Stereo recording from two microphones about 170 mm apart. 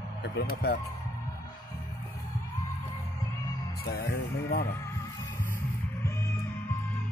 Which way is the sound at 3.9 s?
65° left (ahead or behind).